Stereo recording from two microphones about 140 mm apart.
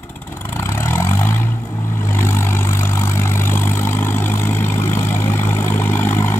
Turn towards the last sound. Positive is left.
turn(degrees=15)  # may be behind; listen again after turning